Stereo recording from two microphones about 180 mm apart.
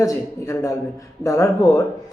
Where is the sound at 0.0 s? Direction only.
20° left (ahead or behind).